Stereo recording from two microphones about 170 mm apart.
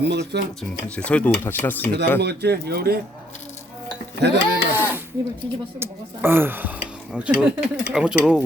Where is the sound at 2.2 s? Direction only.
70° right (ahead or behind).